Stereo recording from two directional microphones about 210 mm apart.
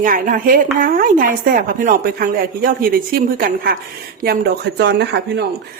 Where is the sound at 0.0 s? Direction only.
40° right (ahead or behind).